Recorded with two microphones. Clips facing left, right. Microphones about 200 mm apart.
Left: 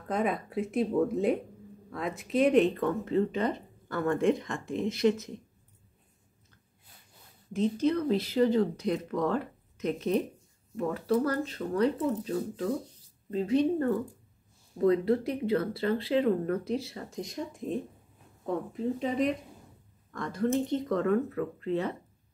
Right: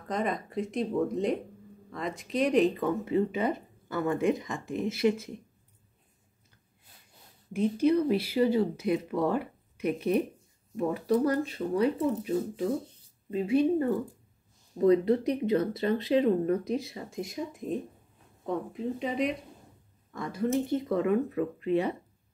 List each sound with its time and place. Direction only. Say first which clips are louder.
0.1 s speech: left 1 dB; 5° left (ahead or behind)
7.5 s speech: right 2 dB; 10° right (ahead or behind)